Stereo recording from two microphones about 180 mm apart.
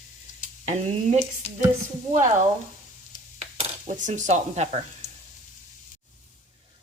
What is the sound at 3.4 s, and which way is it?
Stir, 40° right (ahead or behind).